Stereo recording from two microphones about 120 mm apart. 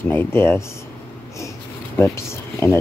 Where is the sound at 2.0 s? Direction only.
20° left (ahead or behind).